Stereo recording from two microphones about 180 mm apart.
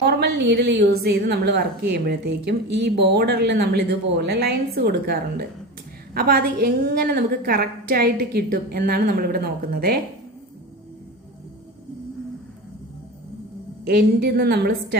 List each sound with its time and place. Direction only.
0.0 s a woman's voice: 65° right (ahead or behind)
13.8 s a woman's voice: 60° right (ahead or behind)